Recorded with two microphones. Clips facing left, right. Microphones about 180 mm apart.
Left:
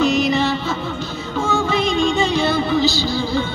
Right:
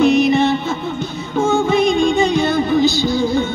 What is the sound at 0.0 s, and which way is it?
Music, 55° right (ahead or behind).